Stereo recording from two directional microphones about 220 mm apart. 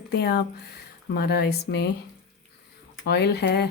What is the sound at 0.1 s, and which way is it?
Speech, 50° left (ahead or behind).